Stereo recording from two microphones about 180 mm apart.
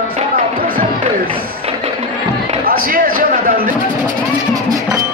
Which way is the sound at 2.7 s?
50° right (ahead or behind).